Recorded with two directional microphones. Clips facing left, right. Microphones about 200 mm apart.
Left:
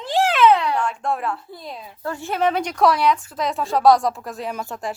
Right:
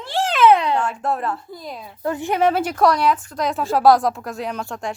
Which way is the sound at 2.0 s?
20° right (ahead or behind).